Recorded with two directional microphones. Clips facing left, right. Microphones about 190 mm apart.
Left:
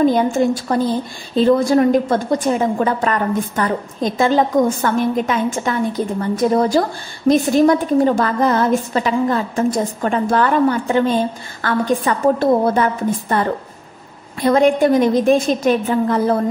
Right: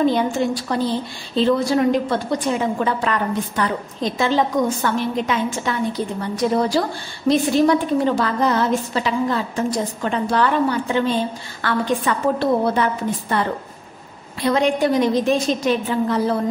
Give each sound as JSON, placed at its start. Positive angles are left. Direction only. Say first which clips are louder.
{"t": 0.0, "sound": "a woman's voice", "louder": "left 4 dB", "side_deg": 45}